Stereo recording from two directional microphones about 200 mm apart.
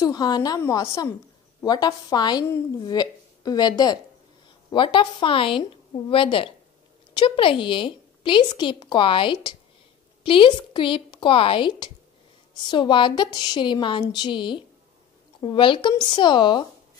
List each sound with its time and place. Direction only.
0.0 s a woman's voice: 20° left (ahead or behind)